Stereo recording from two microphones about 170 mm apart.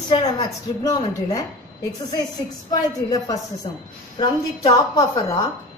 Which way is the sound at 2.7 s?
20° left (ahead or behind).